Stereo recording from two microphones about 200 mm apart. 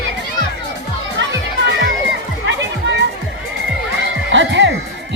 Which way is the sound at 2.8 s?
60° right (ahead or behind).